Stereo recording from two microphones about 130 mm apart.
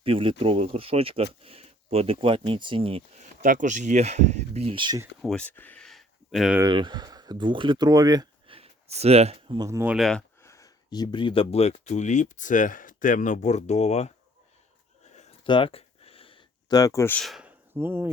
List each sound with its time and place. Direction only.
0.0 s speech: 45° right (ahead or behind)
3.4 s speech: 85° right; by 4.9 s 40° right (ahead or behind)
5.2 s speech: 10° left (ahead or behind)
6.6 s speech: 35° right (ahead or behind)
8.5 s a sound: 50° right (ahead or behind)
9.6 s speech: 25° right (ahead or behind)
9.8 s speech: 5° right (ahead or behind)
10.4 s speech: 25° left (ahead or behind); by 14.1 s 60° left (ahead or behind)
15.1 s a sound: 60° left (ahead or behind)
15.4 s a sound: 40° left (ahead or behind)
16.6 s speech: 30° left (ahead or behind)
17.2 s speech: centre (ahead or behind)
17.4 s a sound: 20° right (ahead or behind)